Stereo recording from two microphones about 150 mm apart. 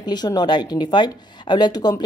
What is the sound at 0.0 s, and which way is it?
Speech, 30° left (ahead or behind).